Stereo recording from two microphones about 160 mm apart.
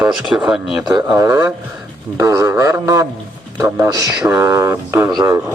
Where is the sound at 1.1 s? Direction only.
20° right (ahead or behind).